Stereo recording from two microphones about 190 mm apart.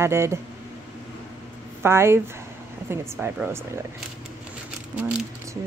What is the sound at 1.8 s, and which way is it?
Speech, 15° right (ahead or behind).